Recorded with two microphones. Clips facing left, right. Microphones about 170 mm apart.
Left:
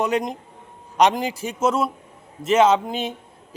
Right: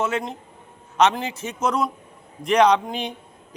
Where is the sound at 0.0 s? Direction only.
15° left (ahead or behind).